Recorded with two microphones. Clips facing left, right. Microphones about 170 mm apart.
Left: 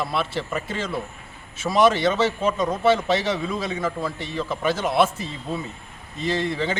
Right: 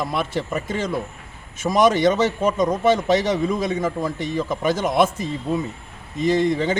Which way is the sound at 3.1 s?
40° right (ahead or behind).